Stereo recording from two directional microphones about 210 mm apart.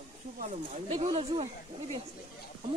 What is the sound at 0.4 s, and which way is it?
Speech, 30° right (ahead or behind).